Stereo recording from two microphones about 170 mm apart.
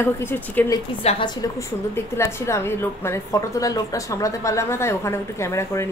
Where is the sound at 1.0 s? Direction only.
30° left (ahead or behind); by 5.8 s 15° left (ahead or behind).